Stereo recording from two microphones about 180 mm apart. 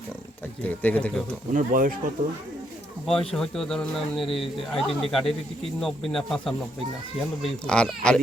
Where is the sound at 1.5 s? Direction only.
50° right (ahead or behind).